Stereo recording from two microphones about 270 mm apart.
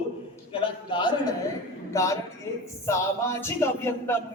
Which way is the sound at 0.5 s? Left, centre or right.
Centre.